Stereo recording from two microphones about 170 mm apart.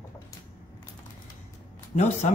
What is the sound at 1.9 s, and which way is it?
Speech, 40° left (ahead or behind).